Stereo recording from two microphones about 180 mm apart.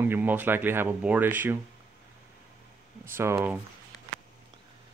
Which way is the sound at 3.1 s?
15° right (ahead or behind).